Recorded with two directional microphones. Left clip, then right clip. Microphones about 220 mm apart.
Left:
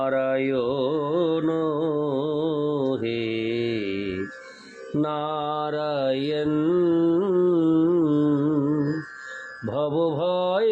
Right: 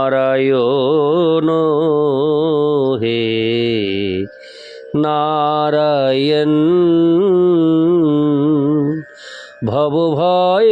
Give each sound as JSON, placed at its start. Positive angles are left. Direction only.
{"t": 0.0, "sound": "mantra", "side_deg": -50}
{"t": 9.6, "sound": "mantra", "side_deg": -45}